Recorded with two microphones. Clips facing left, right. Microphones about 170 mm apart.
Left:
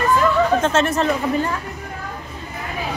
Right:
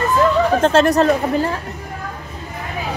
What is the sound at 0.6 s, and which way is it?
Speech, 35° right (ahead or behind).